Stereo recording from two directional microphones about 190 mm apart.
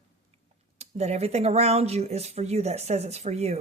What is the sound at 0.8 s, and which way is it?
Speech, 35° right (ahead or behind).